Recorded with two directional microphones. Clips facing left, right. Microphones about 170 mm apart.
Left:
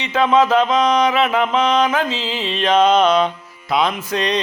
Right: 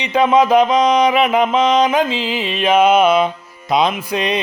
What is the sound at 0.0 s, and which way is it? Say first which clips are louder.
Mantra: right 2 dB; 15° right (ahead or behind).